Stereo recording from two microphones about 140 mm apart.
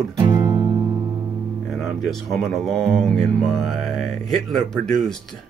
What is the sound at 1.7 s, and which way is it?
Speech, centre (ahead or behind).